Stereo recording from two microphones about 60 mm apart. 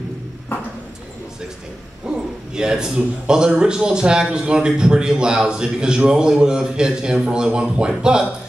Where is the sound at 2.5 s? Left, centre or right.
Centre.